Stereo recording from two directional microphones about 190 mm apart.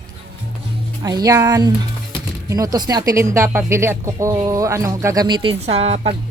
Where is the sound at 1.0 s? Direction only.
20° right (ahead or behind).